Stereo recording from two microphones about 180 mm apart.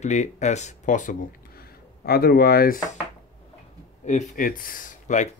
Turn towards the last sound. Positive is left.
turn(degrees=45)  # may be behind; listen again after turning